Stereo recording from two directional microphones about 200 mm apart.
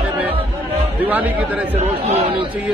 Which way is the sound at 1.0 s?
10° right (ahead or behind).